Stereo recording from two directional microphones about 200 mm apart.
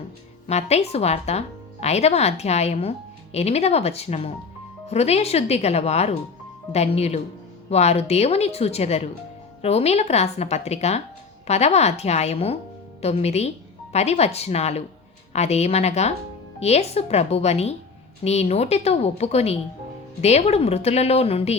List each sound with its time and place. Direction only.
0.4 s speech: 30° left (ahead or behind)